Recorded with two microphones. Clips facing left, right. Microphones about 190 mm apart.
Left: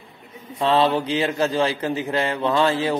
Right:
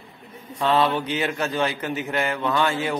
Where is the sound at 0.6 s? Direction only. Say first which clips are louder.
Left 2 dB; 30° left (ahead or behind).